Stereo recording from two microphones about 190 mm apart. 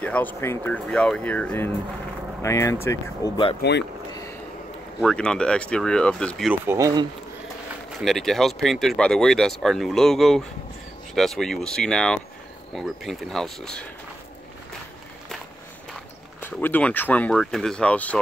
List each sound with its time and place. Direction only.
0.0 s speech: 10° left (ahead or behind)
3.6 s speech: 60° left (ahead or behind)
5.0 s speech: 5° left (ahead or behind)
6.5 s speech: 10° right (ahead or behind)
8.0 s speech: centre (ahead or behind)
16.3 s speech: 10° left (ahead or behind)